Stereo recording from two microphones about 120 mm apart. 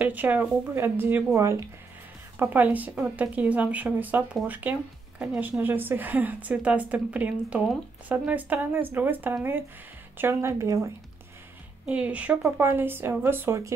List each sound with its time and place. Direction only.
0.0 s a woman's voice: 15° right (ahead or behind)
5.6 s a woman's voice: 15° right (ahead or behind)
11.8 s a woman's voice: 10° right (ahead or behind)